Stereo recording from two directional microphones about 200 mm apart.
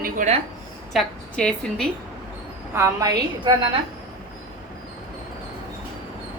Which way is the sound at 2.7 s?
15° right (ahead or behind).